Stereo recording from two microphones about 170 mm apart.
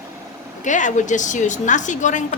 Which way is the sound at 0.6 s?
45° left (ahead or behind).